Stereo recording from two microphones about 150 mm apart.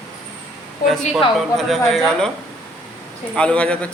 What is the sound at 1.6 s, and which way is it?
Speech, centre (ahead or behind).